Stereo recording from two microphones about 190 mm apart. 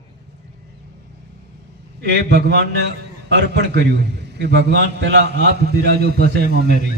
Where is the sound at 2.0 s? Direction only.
65° right (ahead or behind).